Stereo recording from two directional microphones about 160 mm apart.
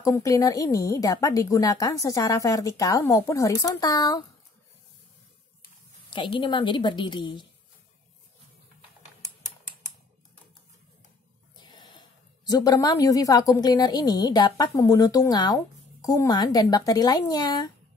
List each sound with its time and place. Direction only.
0.0 s a woman's voice: 20° left (ahead or behind)
6.0 s a woman's voice: 30° left (ahead or behind)
11.5 s a sound: 25° left (ahead or behind)
12.4 s a woman's voice: 25° left (ahead or behind)